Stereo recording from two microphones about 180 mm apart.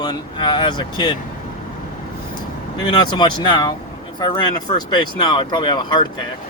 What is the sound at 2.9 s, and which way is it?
Speech, 25° left (ahead or behind).